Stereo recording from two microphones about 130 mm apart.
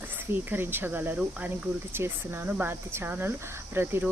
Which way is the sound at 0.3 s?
15° right (ahead or behind).